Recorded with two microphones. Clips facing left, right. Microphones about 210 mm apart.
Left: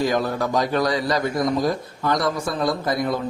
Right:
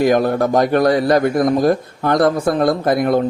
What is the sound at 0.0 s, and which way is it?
A man's voice, 55° right (ahead or behind).